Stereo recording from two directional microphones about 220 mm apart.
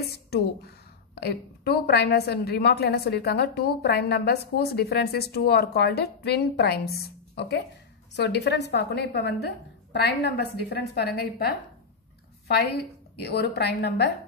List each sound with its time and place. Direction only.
0.3 s a woman's voice: 45° left (ahead or behind)
13.2 s a woman's voice: 45° left (ahead or behind)